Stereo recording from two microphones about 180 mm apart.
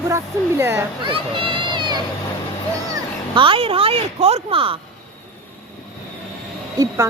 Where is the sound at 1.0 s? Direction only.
30° right (ahead or behind).